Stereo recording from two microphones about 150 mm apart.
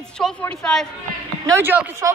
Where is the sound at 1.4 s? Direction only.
15° right (ahead or behind).